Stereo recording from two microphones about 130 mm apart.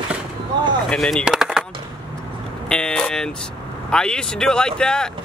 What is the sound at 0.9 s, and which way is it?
Speech, 5° left (ahead or behind).